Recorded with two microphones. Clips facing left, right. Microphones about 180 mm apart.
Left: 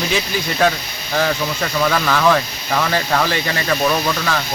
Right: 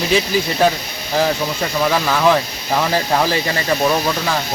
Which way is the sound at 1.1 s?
10° right (ahead or behind).